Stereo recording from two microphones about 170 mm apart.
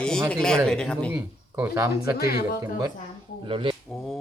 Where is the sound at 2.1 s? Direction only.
65° left (ahead or behind).